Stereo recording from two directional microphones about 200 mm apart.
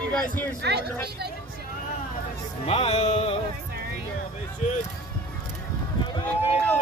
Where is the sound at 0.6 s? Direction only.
55° right (ahead or behind).